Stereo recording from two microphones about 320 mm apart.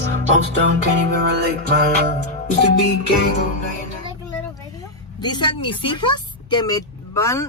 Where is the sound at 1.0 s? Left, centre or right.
Right.